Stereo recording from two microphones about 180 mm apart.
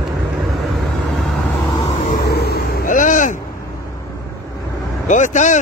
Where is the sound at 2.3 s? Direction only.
60° left (ahead or behind).